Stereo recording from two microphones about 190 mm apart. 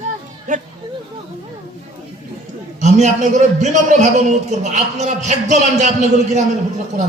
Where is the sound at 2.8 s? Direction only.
35° right (ahead or behind).